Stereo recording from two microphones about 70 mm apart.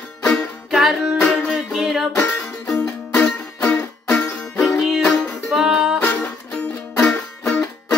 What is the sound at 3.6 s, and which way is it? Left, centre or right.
Music, centre.